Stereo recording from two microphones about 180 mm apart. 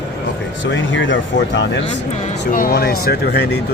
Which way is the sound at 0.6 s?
90° left.